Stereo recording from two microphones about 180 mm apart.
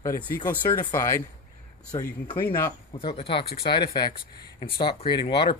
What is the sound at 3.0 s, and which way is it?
Speech, 30° left (ahead or behind).